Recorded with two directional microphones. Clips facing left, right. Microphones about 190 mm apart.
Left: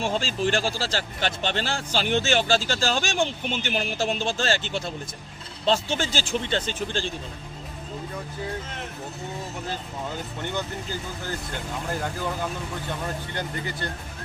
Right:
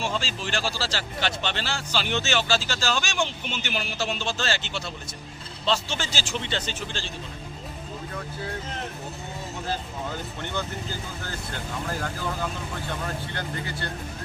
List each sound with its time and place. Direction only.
0.0 s speech: 50° left (ahead or behind)